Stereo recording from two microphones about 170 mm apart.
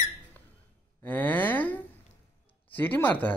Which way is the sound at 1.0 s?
10° left (ahead or behind).